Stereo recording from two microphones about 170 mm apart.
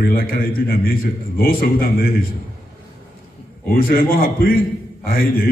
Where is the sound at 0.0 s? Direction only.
60° left (ahead or behind).